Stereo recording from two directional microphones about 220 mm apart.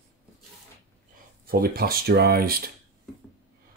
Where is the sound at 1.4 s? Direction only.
40° right (ahead or behind).